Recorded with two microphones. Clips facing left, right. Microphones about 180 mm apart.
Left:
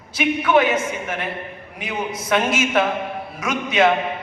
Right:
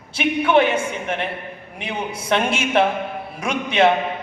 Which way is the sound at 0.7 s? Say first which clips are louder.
Even; 30° right (ahead or behind).